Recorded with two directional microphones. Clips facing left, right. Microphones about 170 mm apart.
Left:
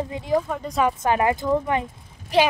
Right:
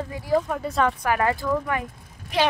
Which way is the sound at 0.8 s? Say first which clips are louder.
Left 2 dB; 20° left (ahead or behind).